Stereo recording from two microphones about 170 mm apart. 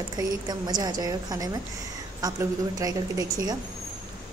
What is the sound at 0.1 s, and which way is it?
A woman's voice, 25° right (ahead or behind).